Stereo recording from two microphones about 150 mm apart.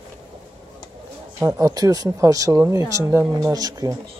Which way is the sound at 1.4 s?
20° right (ahead or behind).